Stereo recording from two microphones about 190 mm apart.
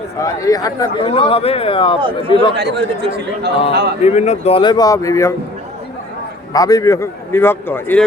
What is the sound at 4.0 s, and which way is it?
A man's voice, 35° left (ahead or behind).